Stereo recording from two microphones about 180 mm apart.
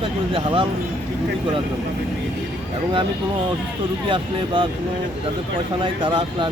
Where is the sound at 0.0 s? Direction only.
30° right (ahead or behind).